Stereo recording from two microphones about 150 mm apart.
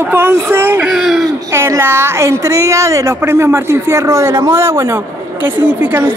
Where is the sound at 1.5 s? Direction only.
15° right (ahead or behind).